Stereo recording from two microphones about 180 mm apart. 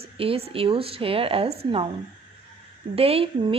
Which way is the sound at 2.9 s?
30° right (ahead or behind).